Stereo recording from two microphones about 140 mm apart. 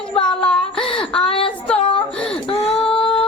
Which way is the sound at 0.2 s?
5° left (ahead or behind).